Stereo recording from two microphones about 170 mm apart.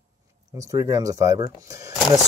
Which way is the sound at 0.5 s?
20° right (ahead or behind).